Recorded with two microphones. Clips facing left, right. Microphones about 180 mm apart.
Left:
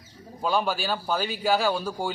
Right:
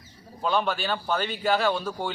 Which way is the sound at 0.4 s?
10° left (ahead or behind).